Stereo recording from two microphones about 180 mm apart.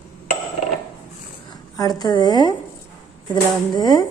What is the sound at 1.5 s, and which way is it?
A woman's voice, 20° left (ahead or behind).